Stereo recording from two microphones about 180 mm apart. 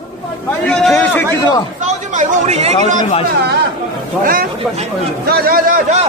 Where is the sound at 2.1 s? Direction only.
40° right (ahead or behind).